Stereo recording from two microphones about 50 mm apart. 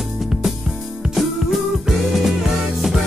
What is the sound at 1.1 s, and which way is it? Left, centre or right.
Music, centre.